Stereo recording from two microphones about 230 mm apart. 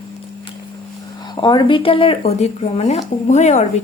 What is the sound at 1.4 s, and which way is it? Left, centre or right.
A woman's voice, left.